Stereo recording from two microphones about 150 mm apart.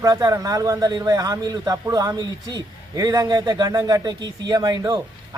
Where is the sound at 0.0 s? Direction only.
25° right (ahead or behind).